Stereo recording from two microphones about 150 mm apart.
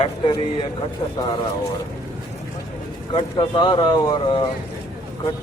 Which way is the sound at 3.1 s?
30° left (ahead or behind).